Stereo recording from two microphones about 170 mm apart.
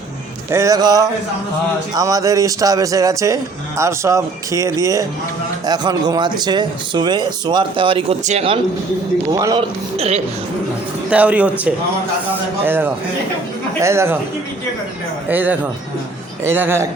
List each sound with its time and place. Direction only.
0.5 s a man's voice: 20° right (ahead or behind); by 8.5 s 40° right (ahead or behind)
9.3 s a man's voice: 20° right (ahead or behind)
11.1 s speech: 10° right (ahead or behind)
15.3 s speech: 10° right (ahead or behind)